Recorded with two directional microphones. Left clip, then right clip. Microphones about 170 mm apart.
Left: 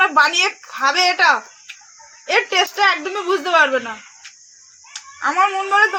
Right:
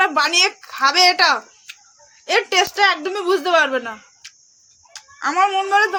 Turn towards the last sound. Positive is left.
turn(degrees=-35)  # may be behind; listen again after turning